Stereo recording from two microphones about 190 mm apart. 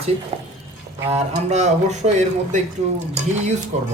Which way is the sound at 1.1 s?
35° right (ahead or behind).